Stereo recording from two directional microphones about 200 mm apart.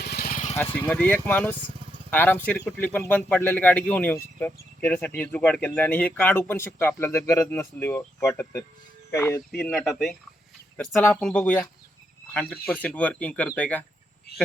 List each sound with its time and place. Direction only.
0.0 s vehicle: 50° left (ahead or behind)
0.5 s speech: 10° left (ahead or behind)